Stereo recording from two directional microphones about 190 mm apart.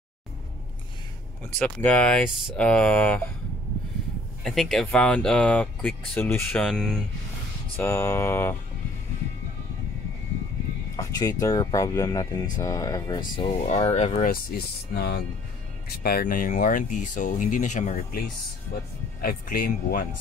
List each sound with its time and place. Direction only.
1.6 s speech: 10° left (ahead or behind)
4.4 s speech: centre (ahead or behind)
7.7 s speech: 15° left (ahead or behind)
11.0 s speech: 15° left (ahead or behind)
13.6 s speech: 35° left (ahead or behind)
14.5 s speech: 55° left (ahead or behind)
19.2 s speech: 50° left (ahead or behind)